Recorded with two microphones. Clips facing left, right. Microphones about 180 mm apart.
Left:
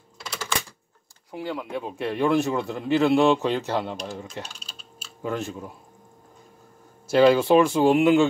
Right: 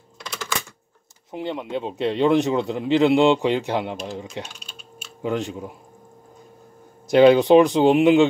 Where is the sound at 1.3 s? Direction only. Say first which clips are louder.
Right 3 dB; 25° right (ahead or behind).